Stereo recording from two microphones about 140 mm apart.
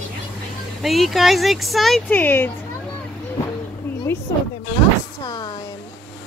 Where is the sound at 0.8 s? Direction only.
Centre (ahead or behind).